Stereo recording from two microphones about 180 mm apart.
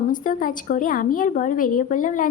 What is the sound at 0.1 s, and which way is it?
A woman's voice, 50° left (ahead or behind).